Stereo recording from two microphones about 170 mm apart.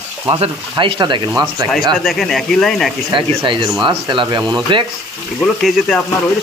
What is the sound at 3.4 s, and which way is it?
Speech, 25° right (ahead or behind).